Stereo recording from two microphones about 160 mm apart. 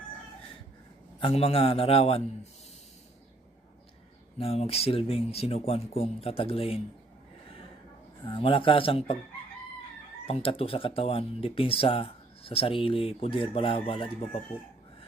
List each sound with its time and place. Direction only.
1.2 s speech: 40° left (ahead or behind)
4.4 s speech: 40° left (ahead or behind)
8.2 s speech: 30° left (ahead or behind)
10.2 s speech: 40° left (ahead or behind)